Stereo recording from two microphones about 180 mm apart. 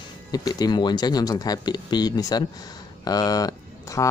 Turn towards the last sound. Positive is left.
turn(degrees=20)  # may be behind; listen again after turning